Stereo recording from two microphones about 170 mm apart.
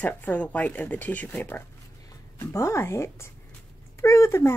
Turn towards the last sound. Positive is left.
turn(degrees=15)  # may be behind; listen again after turning